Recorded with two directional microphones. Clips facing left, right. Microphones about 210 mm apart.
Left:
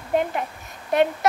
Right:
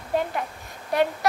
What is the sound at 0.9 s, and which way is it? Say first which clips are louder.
Speech: left 3 dB; 20° left (ahead or behind).